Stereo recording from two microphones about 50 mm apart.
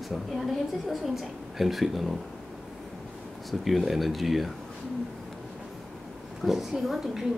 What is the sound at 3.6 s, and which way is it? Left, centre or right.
Speech, centre.